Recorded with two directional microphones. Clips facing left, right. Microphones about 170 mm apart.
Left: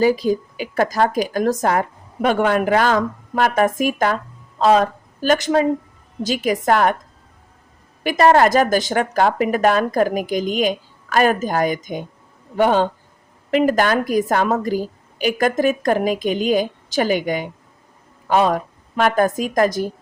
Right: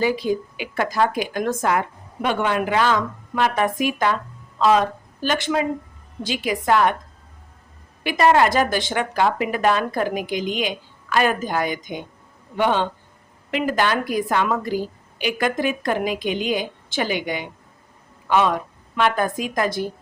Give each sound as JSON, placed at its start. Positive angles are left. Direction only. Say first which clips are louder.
{"t": 0.0, "sound": "a woman's voice", "louder": "left 4 dB", "side_deg": 40}
{"t": 8.0, "sound": "a woman's voice", "louder": "left 3 dB", "side_deg": 45}